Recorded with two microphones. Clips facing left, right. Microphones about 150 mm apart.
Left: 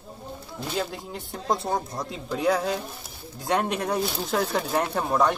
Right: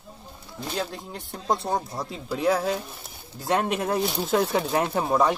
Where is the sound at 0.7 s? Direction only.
Centre (ahead or behind).